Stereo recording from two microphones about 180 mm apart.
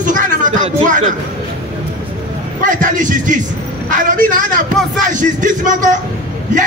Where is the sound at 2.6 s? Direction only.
45° right (ahead or behind).